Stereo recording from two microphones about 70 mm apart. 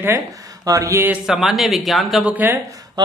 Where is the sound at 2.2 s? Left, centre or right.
Right.